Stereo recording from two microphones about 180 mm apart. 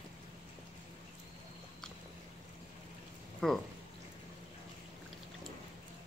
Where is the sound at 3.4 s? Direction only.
Centre (ahead or behind).